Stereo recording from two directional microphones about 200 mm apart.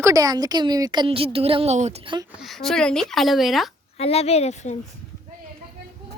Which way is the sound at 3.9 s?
30° left (ahead or behind).